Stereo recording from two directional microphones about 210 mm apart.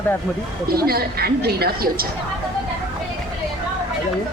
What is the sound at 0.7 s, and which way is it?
Speech, 45° right (ahead or behind).